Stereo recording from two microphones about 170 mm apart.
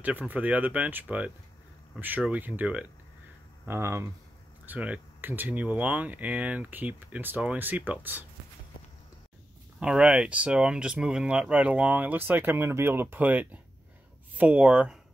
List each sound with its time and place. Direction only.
0.0 s speech: 10° right (ahead or behind)
9.8 s speech: 5° right (ahead or behind)